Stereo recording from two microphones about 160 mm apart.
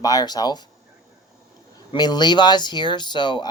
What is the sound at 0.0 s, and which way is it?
Speech, 25° left (ahead or behind).